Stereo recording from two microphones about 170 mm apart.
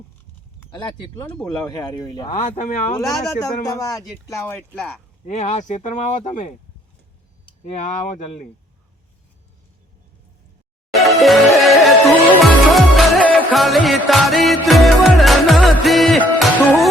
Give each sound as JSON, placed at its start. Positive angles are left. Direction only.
{"t": 0.8, "sound": "speech", "side_deg": 25}
{"t": 2.3, "sound": "speech", "side_deg": 45}
{"t": 3.1, "sound": "speech", "side_deg": 20}
{"t": 5.2, "sound": "speech", "side_deg": 45}
{"t": 7.6, "sound": "speech", "side_deg": 45}
{"t": 10.9, "sound": "music", "side_deg": 0}